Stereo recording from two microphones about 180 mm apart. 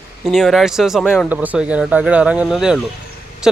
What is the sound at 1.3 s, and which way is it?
Speech, 10° right (ahead or behind).